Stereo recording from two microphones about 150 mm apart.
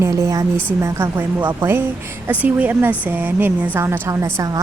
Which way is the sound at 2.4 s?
10° right (ahead or behind).